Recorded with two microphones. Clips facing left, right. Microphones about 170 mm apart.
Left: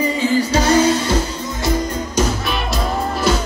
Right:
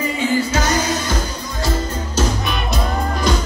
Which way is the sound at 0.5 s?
30° left (ahead or behind).